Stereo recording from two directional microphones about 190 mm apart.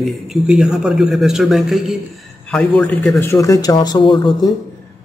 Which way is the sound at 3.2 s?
15° left (ahead or behind).